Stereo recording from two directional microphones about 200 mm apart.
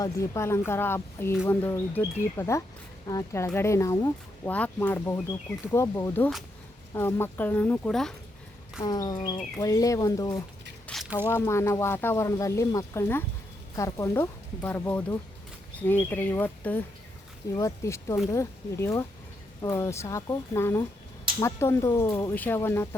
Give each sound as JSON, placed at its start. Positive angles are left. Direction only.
{"t": 0.0, "sound": "speech", "side_deg": 15}
{"t": 8.8, "sound": "speech", "side_deg": 20}
{"t": 10.8, "sound": "squish", "side_deg": 0}
{"t": 11.3, "sound": "speech", "side_deg": 10}